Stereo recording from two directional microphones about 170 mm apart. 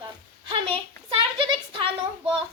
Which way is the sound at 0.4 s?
30° right (ahead or behind).